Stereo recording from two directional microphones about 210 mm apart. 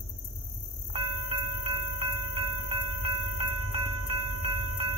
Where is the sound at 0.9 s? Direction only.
25° right (ahead or behind).